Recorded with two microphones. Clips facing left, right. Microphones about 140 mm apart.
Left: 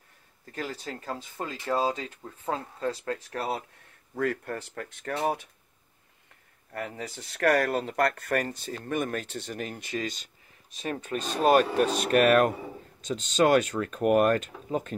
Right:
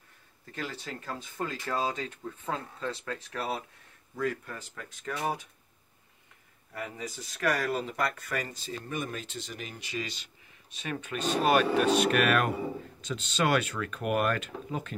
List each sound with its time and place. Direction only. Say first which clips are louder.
0.5 s speech: left 3 dB; 40° left (ahead or behind)
1.1 s speech: right 3 dB; 25° left (ahead or behind)
4.2 s speech: left 4 dB; 60° left (ahead or behind)
6.7 s speech: left 3 dB; 60° left (ahead or behind); by 15.0 s 40° left (ahead or behind)